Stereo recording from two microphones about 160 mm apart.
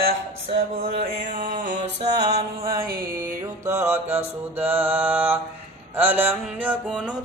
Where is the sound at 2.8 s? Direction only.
60° right (ahead or behind).